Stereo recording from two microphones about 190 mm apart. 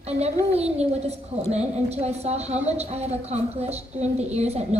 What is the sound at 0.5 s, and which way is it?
A woman's voice, 35° right (ahead or behind).